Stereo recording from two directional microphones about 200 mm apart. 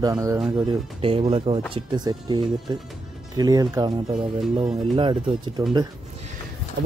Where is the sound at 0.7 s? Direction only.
25° right (ahead or behind).